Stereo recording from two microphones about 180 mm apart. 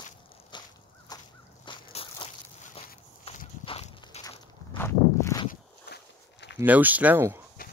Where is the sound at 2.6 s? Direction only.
35° left (ahead or behind).